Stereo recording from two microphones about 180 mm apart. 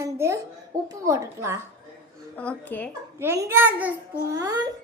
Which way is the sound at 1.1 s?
15° right (ahead or behind).